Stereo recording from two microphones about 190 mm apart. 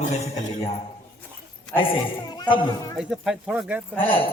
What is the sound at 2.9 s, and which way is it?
Speech, centre (ahead or behind).